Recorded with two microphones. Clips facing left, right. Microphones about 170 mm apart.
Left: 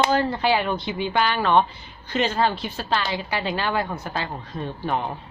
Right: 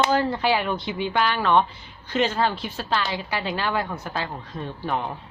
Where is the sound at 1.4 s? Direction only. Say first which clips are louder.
Left 1 dB; 30° left (ahead or behind).